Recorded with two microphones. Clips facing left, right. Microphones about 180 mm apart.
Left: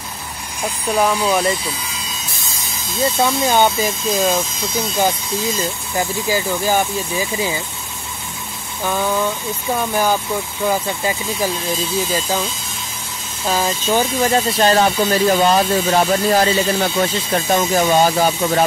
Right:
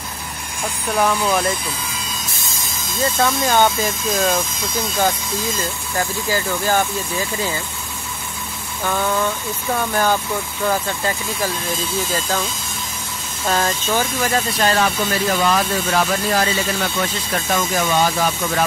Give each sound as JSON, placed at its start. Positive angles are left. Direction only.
{"t": 1.2, "sound": "speech", "side_deg": 5}
{"t": 3.0, "sound": "speech", "side_deg": 15}
{"t": 4.1, "sound": "speech", "side_deg": 0}
{"t": 5.6, "sound": "speech", "side_deg": 15}
{"t": 8.8, "sound": "speech", "side_deg": 10}
{"t": 13.5, "sound": "speech", "side_deg": 5}
{"t": 13.8, "sound": "speech", "side_deg": 20}